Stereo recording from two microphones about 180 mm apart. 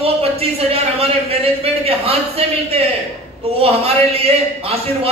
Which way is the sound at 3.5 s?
30° right (ahead or behind).